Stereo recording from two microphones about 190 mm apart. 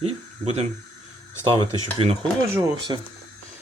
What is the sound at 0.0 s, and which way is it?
Speech, 30° right (ahead or behind).